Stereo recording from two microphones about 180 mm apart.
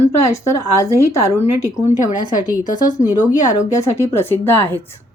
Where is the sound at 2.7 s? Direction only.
45° left (ahead or behind).